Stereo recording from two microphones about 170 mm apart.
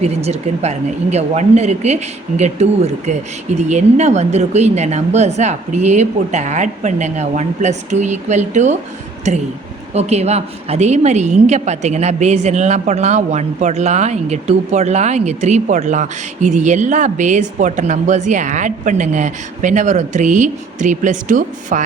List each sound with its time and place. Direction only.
0.0 s a woman's voice: 40° right (ahead or behind)